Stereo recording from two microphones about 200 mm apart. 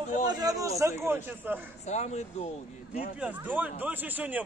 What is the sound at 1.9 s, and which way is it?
Speech, 35° left (ahead or behind).